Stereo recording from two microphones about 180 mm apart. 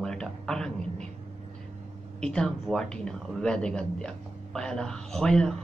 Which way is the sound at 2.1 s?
5° left (ahead or behind).